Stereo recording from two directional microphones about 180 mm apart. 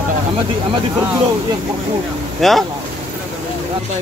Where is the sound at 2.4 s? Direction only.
Centre (ahead or behind).